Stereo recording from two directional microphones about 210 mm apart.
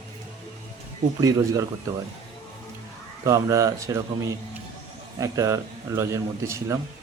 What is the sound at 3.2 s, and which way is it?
A man's voice, 15° right (ahead or behind).